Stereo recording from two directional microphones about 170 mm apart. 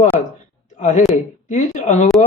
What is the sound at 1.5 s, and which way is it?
Speech, 45° left (ahead or behind).